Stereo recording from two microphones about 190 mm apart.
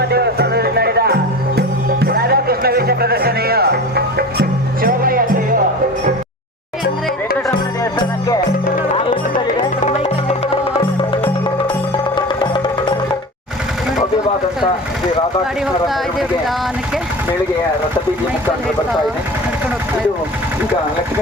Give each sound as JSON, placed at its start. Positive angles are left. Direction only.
{"t": 0.1, "sound": "music", "side_deg": -60}
{"t": 9.8, "sound": "music", "side_deg": 35}